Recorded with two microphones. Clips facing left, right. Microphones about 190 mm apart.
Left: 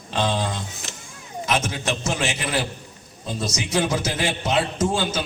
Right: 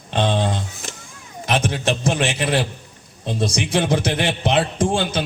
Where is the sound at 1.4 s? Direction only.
60° right (ahead or behind).